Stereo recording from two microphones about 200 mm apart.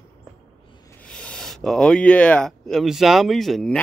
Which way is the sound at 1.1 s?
5° left (ahead or behind).